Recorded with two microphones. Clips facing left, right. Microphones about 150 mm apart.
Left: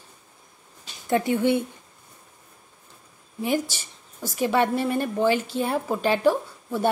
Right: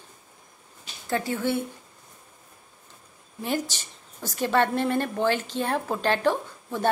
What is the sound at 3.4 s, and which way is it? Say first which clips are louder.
Speech: left 3 dB; 10° left (ahead or behind).